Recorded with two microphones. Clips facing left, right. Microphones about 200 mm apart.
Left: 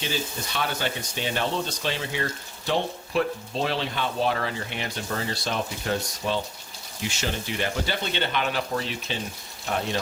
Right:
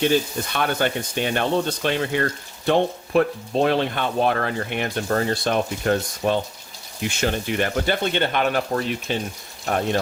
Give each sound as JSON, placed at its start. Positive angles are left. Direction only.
{"t": 0.0, "sound": "speech", "side_deg": -55}